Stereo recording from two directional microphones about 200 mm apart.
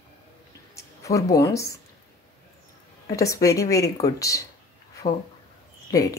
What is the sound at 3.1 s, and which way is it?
Speech, 15° left (ahead or behind).